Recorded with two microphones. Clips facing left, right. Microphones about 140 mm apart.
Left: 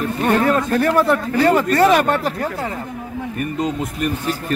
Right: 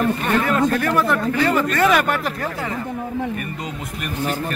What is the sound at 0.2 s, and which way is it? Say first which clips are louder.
Speech: left 2 dB; 35° left (ahead or behind).